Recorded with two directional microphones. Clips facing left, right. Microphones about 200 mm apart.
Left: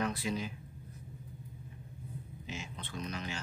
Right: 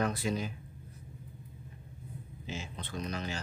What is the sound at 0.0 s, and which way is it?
Speech, 45° right (ahead or behind).